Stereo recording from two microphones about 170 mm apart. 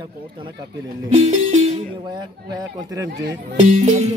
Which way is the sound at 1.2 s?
35° right (ahead or behind).